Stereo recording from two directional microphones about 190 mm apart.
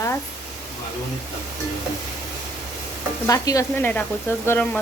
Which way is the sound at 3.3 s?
15° left (ahead or behind).